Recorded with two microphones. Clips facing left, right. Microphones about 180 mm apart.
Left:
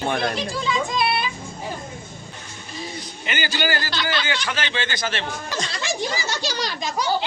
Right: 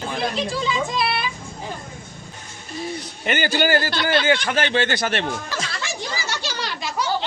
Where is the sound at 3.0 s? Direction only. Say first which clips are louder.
Right 5 dB; 55° right (ahead or behind).